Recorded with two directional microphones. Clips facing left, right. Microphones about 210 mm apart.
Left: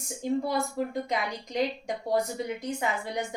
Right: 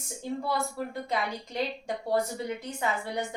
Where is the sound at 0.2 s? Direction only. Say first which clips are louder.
Left 3 dB; 15° left (ahead or behind).